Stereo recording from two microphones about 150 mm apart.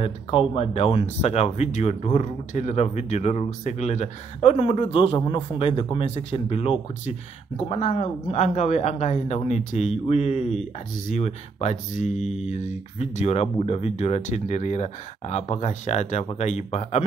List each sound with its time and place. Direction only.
0.0 s speech: 40° left (ahead or behind)